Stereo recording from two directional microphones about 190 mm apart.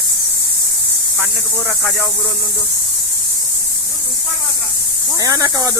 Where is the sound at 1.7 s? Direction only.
Centre (ahead or behind).